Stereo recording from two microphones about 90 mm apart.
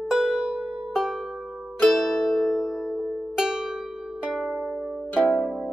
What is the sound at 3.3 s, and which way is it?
Pizzicato, 5° right (ahead or behind).